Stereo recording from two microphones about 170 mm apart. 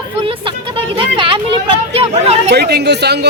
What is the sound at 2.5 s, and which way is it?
Speech, 75° right (ahead or behind).